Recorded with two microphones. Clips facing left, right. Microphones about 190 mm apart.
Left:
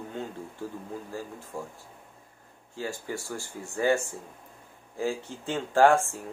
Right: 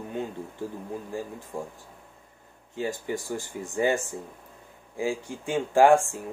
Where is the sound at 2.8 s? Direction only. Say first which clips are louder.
Right 4 dB; 20° right (ahead or behind).